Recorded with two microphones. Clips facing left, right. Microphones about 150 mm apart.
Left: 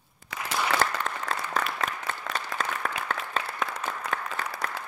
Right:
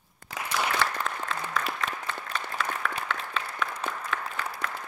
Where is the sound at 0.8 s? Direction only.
45° left (ahead or behind).